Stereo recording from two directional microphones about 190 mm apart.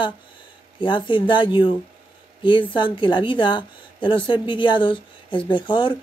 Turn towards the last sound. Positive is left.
turn(degrees=25)  # may be behind; listen again after turning